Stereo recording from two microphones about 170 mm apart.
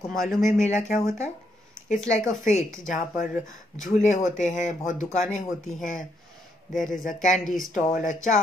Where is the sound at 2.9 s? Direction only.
50° left (ahead or behind).